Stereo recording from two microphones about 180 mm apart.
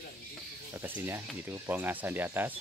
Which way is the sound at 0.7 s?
15° right (ahead or behind).